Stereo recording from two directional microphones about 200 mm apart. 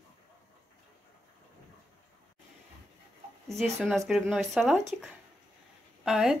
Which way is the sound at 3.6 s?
Centre (ahead or behind).